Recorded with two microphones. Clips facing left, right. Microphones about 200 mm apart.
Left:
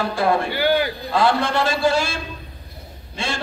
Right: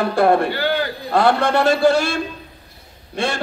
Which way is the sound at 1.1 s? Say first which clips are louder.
Right 4 dB; 60° right (ahead or behind).